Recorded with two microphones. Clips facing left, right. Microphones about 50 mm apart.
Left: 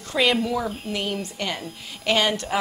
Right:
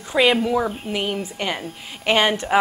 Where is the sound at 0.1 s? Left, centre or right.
Centre.